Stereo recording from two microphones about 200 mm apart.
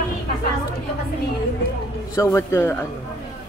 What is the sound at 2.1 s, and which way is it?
Speech, 15° left (ahead or behind).